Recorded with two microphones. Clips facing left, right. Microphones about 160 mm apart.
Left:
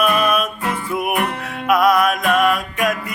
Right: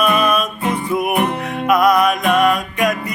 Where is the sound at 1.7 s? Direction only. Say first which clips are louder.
Right 1 dB; 5° left (ahead or behind).